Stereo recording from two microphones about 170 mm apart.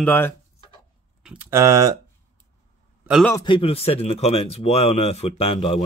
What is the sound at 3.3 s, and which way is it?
Speech, 25° left (ahead or behind).